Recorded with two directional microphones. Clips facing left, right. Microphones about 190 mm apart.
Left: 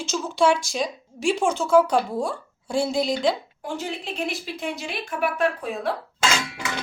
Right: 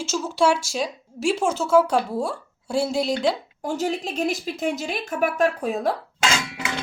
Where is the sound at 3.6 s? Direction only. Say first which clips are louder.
Right 5 dB; 40° right (ahead or behind).